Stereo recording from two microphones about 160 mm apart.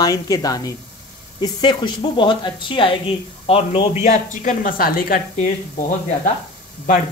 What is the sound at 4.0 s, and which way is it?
Speech, 50° left (ahead or behind).